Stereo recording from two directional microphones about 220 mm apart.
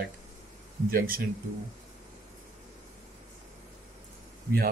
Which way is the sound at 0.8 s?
40° right (ahead or behind).